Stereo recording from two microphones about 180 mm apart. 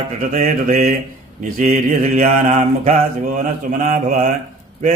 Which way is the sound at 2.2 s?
50° right (ahead or behind).